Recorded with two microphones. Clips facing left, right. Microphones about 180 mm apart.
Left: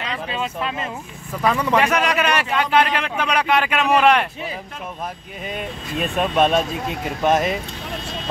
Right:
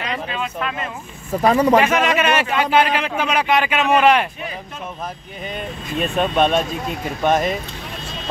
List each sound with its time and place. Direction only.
0.0 s a sound: 25° left (ahead or behind)
1.3 s speech: 40° right (ahead or behind)
1.8 s a man's voice: centre (ahead or behind)
5.4 s a man's voice: 5° left (ahead or behind)